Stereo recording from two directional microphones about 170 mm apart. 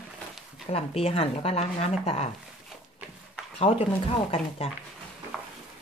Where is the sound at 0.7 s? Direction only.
35° left (ahead or behind).